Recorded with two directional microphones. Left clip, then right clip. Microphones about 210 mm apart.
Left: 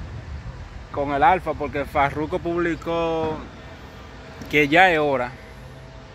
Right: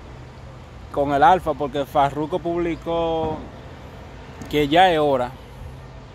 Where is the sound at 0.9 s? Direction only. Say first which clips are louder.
Right 3 dB; 20° right (ahead or behind); by 3.3 s centre (ahead or behind).